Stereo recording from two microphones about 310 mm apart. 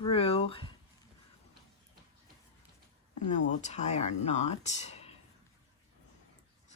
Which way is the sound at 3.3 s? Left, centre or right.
Left.